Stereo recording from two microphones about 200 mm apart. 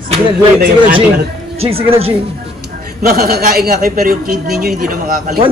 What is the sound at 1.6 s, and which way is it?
Speech, 30° right (ahead or behind).